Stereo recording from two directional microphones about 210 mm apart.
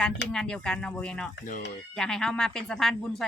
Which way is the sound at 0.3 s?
5° left (ahead or behind).